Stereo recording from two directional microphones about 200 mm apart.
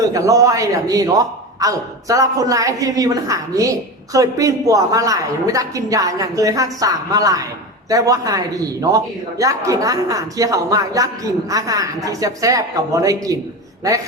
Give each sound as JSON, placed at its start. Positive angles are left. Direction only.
{"t": 0.1, "sound": "a woman's voice", "side_deg": -15}